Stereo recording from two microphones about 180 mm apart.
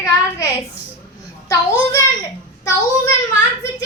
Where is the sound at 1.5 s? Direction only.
20° left (ahead or behind).